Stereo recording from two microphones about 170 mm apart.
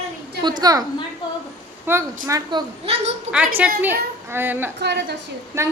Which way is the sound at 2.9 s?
35° right (ahead or behind).